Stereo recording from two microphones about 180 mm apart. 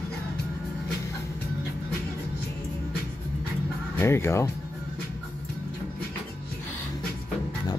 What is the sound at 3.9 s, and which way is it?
Speech, 15° left (ahead or behind).